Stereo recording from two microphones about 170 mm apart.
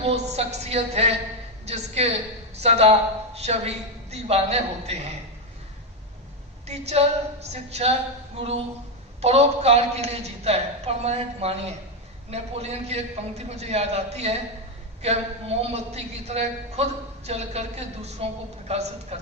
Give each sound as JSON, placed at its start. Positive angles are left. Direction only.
{"t": 0.0, "sound": "a man's voice", "side_deg": -40}
{"t": 6.7, "sound": "a man's voice", "side_deg": -40}
{"t": 9.2, "sound": "a man's voice", "side_deg": -40}